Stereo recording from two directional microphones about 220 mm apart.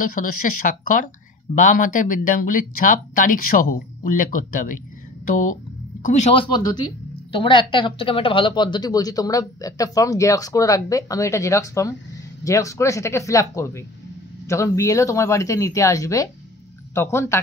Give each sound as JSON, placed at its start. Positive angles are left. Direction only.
{"t": 0.0, "sound": "speech", "side_deg": 35}